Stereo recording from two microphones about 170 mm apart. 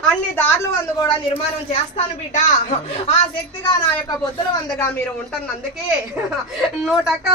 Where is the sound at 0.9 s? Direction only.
30° left (ahead or behind).